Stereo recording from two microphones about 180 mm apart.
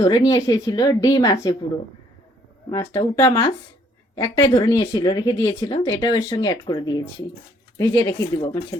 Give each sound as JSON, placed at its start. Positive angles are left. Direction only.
{"t": 0.0, "sound": "speech", "side_deg": 20}
{"t": 2.6, "sound": "speech", "side_deg": 15}